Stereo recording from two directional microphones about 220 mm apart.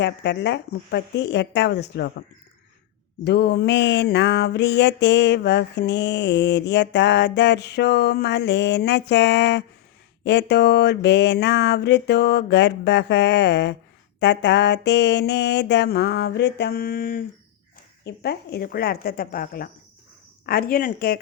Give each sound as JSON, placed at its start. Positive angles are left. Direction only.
{"t": 0.0, "sound": "mantra", "side_deg": 50}
{"t": 3.2, "sound": "mantra", "side_deg": 50}